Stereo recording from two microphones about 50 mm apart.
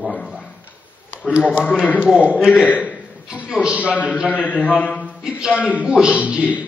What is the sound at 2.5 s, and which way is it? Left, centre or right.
Speech, left.